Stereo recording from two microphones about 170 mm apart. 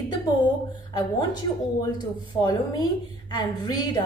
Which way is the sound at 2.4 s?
20° left (ahead or behind).